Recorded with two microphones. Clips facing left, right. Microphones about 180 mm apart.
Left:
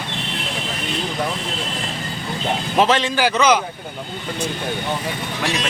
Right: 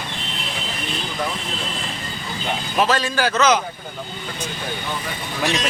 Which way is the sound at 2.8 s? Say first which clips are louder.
Left 2 dB; 25° left (ahead or behind).